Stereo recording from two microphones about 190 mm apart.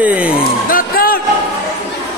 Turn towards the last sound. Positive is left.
turn(degrees=50)  # may be behind; listen again after turning